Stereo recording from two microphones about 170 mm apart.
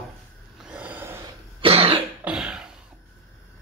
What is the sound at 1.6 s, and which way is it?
Cough, 35° right (ahead or behind).